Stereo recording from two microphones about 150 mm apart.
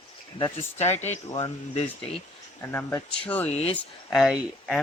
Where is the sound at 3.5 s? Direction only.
45° left (ahead or behind).